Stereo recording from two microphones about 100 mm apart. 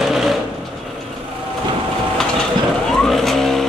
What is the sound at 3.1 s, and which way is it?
Vehicle, centre (ahead or behind).